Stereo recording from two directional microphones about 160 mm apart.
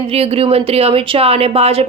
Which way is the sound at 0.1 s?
40° right (ahead or behind).